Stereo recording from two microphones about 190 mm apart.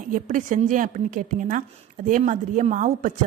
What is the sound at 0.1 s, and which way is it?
A woman's voice, 45° right (ahead or behind).